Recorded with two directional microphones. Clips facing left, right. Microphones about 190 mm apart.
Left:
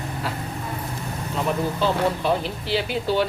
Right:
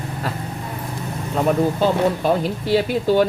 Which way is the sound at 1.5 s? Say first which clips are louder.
Right 5 dB; 45° right (ahead or behind).